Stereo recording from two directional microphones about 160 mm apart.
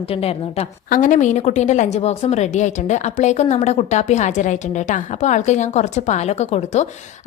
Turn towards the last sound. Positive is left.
turn(degrees=45)  # may be behind; listen again after turning